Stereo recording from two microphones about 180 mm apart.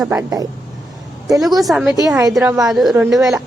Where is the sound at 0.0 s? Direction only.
15° right (ahead or behind).